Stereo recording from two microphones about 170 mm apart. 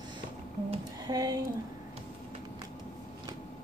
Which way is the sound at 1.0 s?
20° right (ahead or behind).